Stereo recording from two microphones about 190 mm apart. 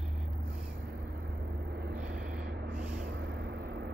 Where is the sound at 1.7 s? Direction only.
60° right (ahead or behind).